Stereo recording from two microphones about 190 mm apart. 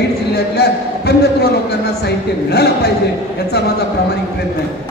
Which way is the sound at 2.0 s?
60° left (ahead or behind).